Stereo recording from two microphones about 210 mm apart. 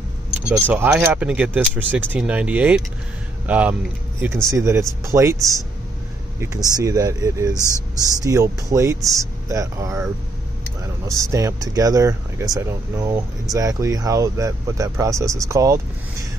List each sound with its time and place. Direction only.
0.5 s speech: 5° right (ahead or behind)
6.8 s speech: 15° right (ahead or behind)
11.1 s speech: 15° right (ahead or behind)